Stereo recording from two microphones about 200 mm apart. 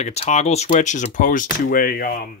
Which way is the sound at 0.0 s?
35° left (ahead or behind).